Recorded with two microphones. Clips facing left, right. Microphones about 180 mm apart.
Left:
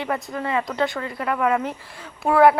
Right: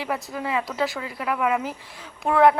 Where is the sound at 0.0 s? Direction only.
5° right (ahead or behind).